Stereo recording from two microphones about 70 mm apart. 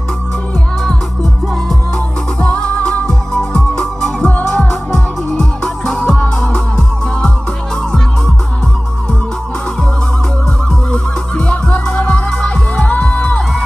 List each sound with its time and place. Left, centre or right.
2.4 s music: centre
10.9 s music: centre